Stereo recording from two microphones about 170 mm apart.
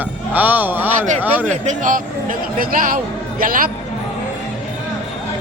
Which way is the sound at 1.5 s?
50° right (ahead or behind).